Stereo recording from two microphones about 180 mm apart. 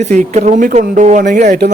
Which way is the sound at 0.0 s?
40° right (ahead or behind).